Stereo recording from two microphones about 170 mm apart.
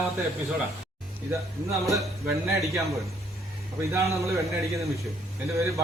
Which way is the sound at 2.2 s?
20° right (ahead or behind).